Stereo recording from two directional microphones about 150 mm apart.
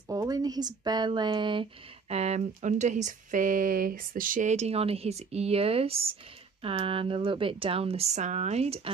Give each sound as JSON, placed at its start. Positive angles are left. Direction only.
{"t": 0.1, "sound": "speech", "side_deg": -25}